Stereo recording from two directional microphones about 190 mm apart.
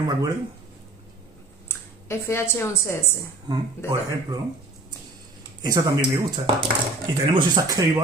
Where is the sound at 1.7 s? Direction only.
15° left (ahead or behind).